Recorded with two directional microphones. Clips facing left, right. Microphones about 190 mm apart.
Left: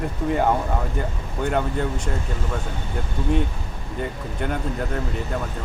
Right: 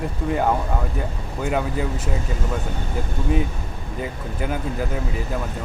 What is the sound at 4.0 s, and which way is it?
Speech, 5° right (ahead or behind).